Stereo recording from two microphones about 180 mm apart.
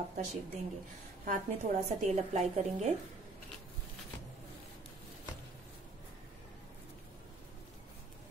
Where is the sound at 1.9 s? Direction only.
40° right (ahead or behind).